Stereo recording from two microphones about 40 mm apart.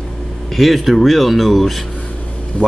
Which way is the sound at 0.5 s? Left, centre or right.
Centre.